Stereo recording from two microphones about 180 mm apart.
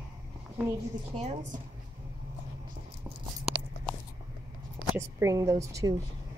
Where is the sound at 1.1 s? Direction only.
35° right (ahead or behind).